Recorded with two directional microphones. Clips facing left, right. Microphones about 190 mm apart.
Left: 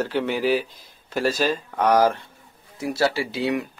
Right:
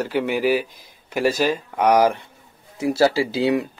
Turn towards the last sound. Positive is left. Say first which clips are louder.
# right 5 dB
turn(degrees=-30)  # may be behind; listen again after turning